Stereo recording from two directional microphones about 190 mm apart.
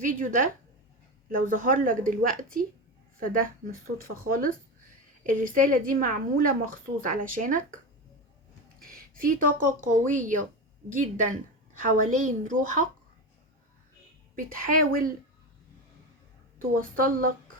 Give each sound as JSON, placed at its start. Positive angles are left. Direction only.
{"t": 0.0, "sound": "a woman's voice", "side_deg": -45}
{"t": 3.2, "sound": "a woman's voice", "side_deg": -45}
{"t": 8.9, "sound": "a woman's voice", "side_deg": -50}
{"t": 14.3, "sound": "a woman's voice", "side_deg": -45}
{"t": 16.6, "sound": "a woman's voice", "side_deg": -45}